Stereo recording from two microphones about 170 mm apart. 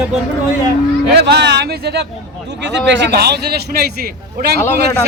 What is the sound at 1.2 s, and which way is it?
Speech, 75° right (ahead or behind).